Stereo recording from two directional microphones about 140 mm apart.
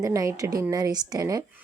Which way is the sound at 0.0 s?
25° right (ahead or behind).